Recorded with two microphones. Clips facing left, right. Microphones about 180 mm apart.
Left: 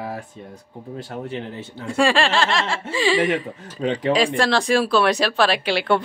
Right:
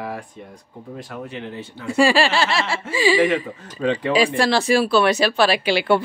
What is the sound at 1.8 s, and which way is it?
Speech, 5° right (ahead or behind).